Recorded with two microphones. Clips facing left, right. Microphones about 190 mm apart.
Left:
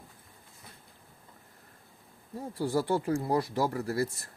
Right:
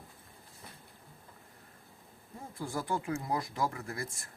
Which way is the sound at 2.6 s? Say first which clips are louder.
Left 7 dB; 35° left (ahead or behind).